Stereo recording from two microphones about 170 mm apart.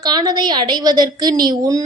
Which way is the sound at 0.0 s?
25° right (ahead or behind).